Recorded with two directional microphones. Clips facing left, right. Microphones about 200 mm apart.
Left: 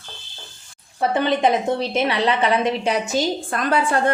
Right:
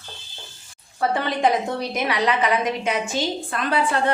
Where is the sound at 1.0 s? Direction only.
20° left (ahead or behind).